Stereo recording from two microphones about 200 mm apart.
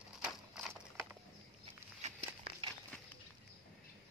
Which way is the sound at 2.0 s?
35° right (ahead or behind).